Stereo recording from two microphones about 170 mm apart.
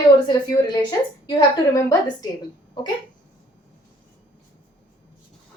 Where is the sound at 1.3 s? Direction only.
25° left (ahead or behind).